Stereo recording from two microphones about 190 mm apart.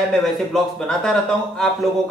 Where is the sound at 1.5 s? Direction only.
Centre (ahead or behind).